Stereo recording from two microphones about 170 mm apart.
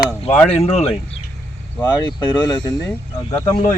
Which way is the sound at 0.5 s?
40° left (ahead or behind).